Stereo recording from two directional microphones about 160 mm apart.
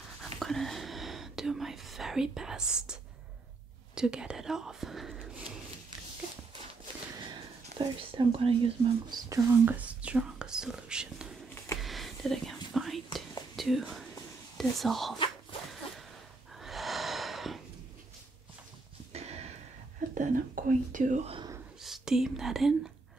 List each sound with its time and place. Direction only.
0.2 s whispering: centre (ahead or behind)
3.9 s speech: 5° right (ahead or behind)
7.7 s speech: 35° right (ahead or behind)
9.3 s speech: 20° right (ahead or behind)
11.8 s whispering: centre (ahead or behind)
13.6 s speech: centre (ahead or behind)
16.5 s snort: centre (ahead or behind)
19.1 s a sound: 40° right (ahead or behind)
20.2 s speech: 60° right (ahead or behind)
21.8 s speech: centre (ahead or behind)